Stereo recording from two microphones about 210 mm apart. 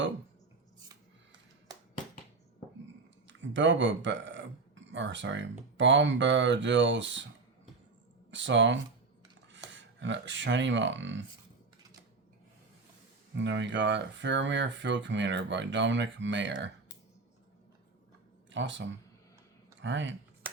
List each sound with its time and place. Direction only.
3.2 s speech: 60° right (ahead or behind)
8.3 s speech: 60° right (ahead or behind)
13.3 s speech: 60° right (ahead or behind)
18.5 s speech: 60° right (ahead or behind)